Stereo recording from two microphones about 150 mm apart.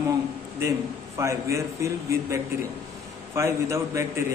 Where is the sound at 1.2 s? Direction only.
20° right (ahead or behind).